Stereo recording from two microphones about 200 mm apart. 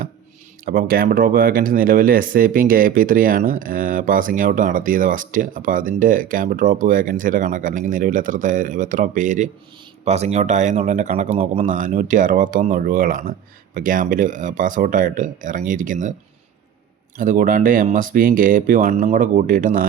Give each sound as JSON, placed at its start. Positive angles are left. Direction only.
{"t": 0.6, "sound": "speech", "side_deg": -45}
{"t": 17.2, "sound": "speech", "side_deg": -40}